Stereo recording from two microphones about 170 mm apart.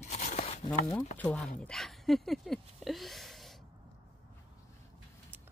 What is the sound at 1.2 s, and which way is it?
Speech, 10° left (ahead or behind).